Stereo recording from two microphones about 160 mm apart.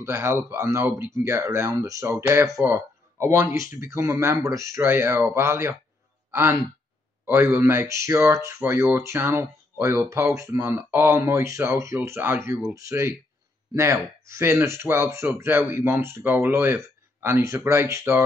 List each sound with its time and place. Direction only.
0.0 s speech: 15° right (ahead or behind)